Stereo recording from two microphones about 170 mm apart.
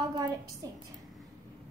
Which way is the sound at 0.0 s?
25° right (ahead or behind).